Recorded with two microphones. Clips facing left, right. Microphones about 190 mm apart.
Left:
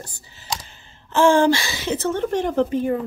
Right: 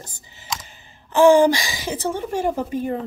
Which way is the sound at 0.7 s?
15° right (ahead or behind).